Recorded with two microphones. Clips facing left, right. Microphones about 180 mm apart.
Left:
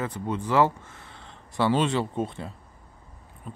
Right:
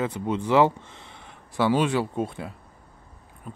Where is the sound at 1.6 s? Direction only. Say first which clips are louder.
Right 1 dB; 5° right (ahead or behind).